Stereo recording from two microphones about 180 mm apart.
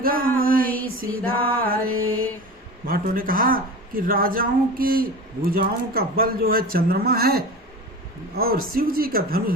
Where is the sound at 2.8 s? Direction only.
55° right (ahead or behind).